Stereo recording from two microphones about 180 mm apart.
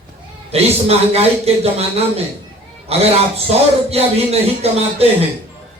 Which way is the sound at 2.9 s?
35° right (ahead or behind).